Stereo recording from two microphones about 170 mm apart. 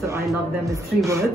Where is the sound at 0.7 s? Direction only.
15° right (ahead or behind).